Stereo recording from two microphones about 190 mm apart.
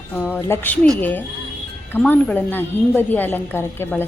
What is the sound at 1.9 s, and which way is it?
A woman's voice, 10° left (ahead or behind).